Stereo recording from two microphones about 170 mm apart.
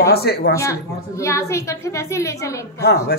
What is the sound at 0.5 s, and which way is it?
A woman's voice, 15° left (ahead or behind).